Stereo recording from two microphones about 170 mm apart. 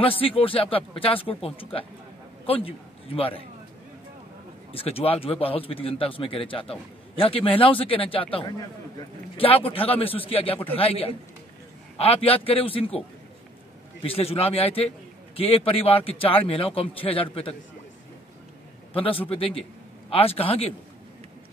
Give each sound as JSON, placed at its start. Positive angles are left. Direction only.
{"t": 0.0, "sound": "a man's voice", "side_deg": 30}
{"t": 4.7, "sound": "a man's voice", "side_deg": 35}
{"t": 14.0, "sound": "a man's voice", "side_deg": 35}
{"t": 18.9, "sound": "a man's voice", "side_deg": 30}